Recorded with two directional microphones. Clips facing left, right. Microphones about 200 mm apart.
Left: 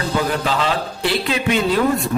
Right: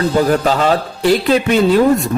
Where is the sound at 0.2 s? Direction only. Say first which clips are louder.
Right 6 dB; 45° right (ahead or behind).